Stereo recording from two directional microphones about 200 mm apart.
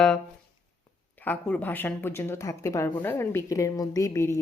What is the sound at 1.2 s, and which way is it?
Speech, 5° left (ahead or behind).